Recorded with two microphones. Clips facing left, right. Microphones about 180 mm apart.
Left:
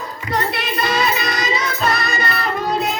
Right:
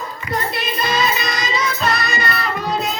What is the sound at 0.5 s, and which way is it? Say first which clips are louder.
Music: left 1 dB; 65° left (ahead or behind).